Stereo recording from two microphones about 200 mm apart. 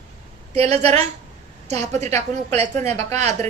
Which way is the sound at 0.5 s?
30° right (ahead or behind).